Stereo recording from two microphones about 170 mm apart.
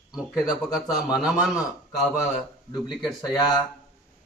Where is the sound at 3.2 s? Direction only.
25° left (ahead or behind).